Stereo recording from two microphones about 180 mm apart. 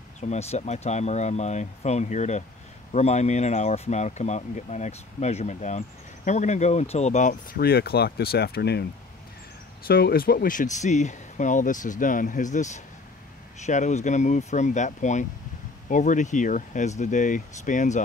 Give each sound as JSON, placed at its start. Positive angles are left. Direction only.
{"t": 0.2, "sound": "speech", "side_deg": 35}
{"t": 9.8, "sound": "speech", "side_deg": 55}